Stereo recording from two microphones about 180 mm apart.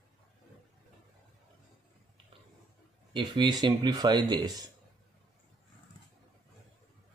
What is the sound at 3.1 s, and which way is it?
Speech, 25° right (ahead or behind).